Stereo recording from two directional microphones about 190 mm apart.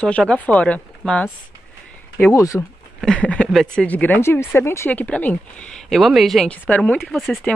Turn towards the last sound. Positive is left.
turn(degrees=0)  # may be behind; listen again after turning